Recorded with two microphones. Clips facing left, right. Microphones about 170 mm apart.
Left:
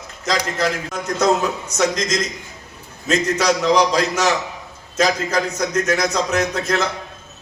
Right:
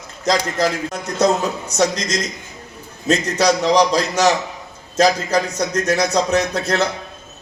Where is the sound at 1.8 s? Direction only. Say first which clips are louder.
Right 1 dB; 35° right (ahead or behind).